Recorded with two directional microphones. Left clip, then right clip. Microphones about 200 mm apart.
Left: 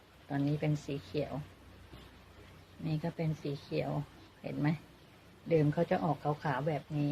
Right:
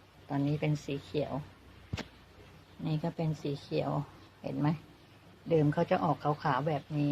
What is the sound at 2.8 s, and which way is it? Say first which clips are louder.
Speech: right 2 dB; 20° right (ahead or behind).